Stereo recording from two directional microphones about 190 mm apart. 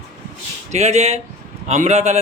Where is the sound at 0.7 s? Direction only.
35° right (ahead or behind).